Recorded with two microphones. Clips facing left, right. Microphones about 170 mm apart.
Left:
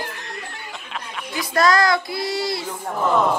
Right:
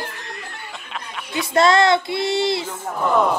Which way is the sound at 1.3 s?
25° right (ahead or behind).